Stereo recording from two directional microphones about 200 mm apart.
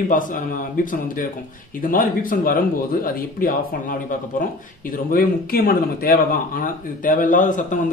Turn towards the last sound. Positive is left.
turn(degrees=40)  # may be behind; listen again after turning